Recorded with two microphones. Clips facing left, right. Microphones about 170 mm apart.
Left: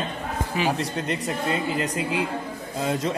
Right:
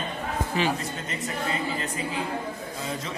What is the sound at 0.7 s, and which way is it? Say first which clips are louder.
Speech: left 6 dB; 70° left (ahead or behind).